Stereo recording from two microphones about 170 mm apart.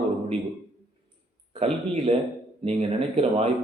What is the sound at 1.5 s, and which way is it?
Speech, 35° right (ahead or behind).